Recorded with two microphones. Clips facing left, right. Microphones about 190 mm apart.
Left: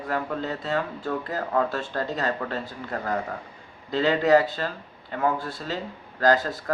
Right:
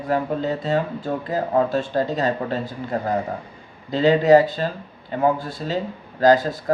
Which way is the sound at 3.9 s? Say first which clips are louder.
Right 5 dB; 15° right (ahead or behind).